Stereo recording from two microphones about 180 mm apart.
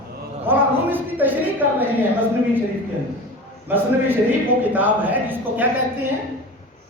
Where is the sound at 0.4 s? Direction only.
10° right (ahead or behind).